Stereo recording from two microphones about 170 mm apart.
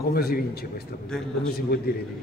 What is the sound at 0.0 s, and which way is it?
Speech, 65° left (ahead or behind).